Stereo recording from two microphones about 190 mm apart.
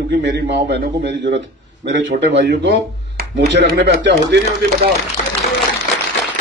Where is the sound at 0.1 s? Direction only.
60° right (ahead or behind).